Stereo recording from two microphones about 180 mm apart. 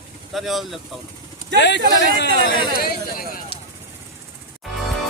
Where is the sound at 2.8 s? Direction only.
55° left (ahead or behind).